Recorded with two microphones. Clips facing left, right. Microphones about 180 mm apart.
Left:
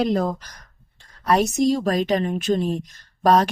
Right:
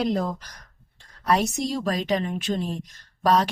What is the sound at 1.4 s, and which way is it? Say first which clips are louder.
Speech: left 7 dB; 45° left (ahead or behind).